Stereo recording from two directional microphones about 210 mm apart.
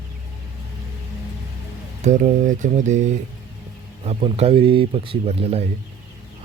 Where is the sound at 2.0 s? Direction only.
35° right (ahead or behind).